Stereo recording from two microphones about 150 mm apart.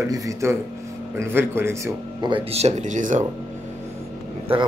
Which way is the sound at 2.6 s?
55° right (ahead or behind).